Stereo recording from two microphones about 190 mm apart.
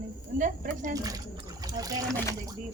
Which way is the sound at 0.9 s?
20° right (ahead or behind).